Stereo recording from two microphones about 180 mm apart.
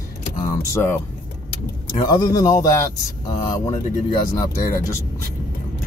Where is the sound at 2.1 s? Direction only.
20° left (ahead or behind).